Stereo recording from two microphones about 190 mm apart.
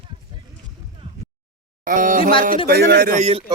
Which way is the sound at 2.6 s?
55° right (ahead or behind).